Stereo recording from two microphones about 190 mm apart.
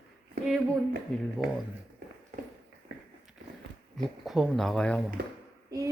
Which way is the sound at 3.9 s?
Centre (ahead or behind).